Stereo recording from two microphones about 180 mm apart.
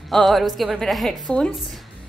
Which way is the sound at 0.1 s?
Centre (ahead or behind).